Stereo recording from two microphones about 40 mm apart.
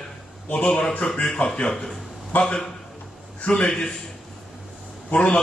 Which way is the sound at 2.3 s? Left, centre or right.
Left.